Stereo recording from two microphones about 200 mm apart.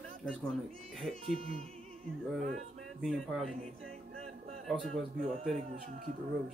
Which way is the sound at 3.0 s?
Centre (ahead or behind).